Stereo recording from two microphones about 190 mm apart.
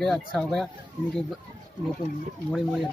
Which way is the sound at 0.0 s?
5° left (ahead or behind).